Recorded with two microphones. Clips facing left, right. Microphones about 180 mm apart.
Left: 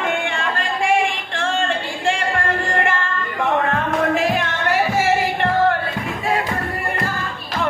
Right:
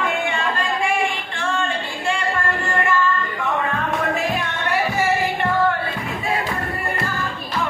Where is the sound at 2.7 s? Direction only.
90° left.